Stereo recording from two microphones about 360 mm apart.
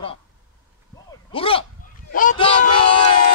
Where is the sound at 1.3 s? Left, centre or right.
Centre.